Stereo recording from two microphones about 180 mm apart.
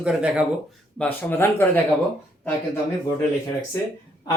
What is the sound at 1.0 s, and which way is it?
Speech, 10° left (ahead or behind).